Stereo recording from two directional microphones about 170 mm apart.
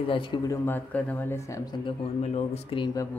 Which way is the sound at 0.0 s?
30° left (ahead or behind).